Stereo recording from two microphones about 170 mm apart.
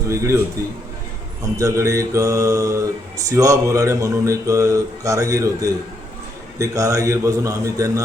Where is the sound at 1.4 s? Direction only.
20° right (ahead or behind).